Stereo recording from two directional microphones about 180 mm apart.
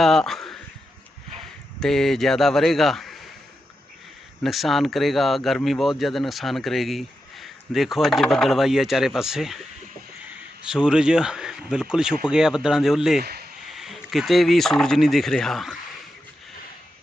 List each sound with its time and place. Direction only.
0.0 s a man's voice: centre (ahead or behind)
4.4 s speech: centre (ahead or behind)
10.7 s speech: 5° right (ahead or behind)
13.2 s speech: 60° right (ahead or behind)
13.7 s speech: centre (ahead or behind)